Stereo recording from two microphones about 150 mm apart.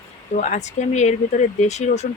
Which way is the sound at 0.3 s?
55° left (ahead or behind).